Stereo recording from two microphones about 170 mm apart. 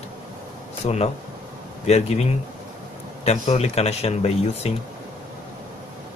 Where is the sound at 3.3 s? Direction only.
40° left (ahead or behind).